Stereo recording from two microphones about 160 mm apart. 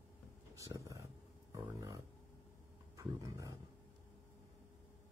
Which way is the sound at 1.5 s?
20° right (ahead or behind).